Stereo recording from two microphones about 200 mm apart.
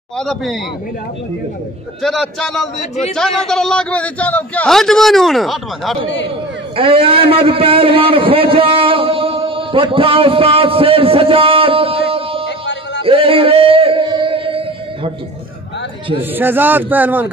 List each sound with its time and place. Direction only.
0.2 s a man's voice: centre (ahead or behind)
2.0 s a man's voice: centre (ahead or behind)
6.8 s a man's voice: 25° right (ahead or behind)
12.4 s a sound: 60° left (ahead or behind)
13.0 s a sound: 25° right (ahead or behind)
16.2 s speech: 10° right (ahead or behind)